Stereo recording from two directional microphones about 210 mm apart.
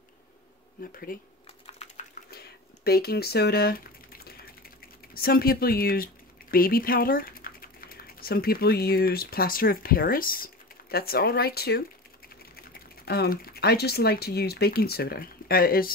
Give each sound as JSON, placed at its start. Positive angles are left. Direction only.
{"t": 0.9, "sound": "speech", "side_deg": 45}
{"t": 1.7, "sound": "typing", "side_deg": 30}
{"t": 2.3, "sound": "a sound", "side_deg": 50}
{"t": 6.5, "sound": "speech", "side_deg": 45}